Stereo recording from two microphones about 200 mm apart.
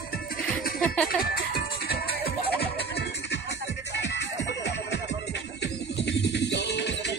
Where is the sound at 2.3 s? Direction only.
55° left (ahead or behind).